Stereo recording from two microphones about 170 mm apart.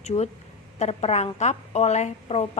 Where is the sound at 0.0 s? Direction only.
40° left (ahead or behind).